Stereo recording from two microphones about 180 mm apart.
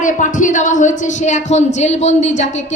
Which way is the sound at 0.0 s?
45° left (ahead or behind).